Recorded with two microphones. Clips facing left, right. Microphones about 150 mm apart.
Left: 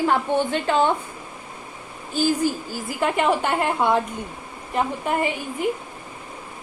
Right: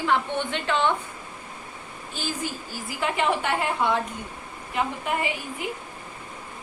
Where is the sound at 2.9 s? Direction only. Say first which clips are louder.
Left 4 dB; 50° left (ahead or behind).